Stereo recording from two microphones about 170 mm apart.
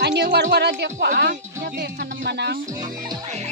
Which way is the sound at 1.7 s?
90° right.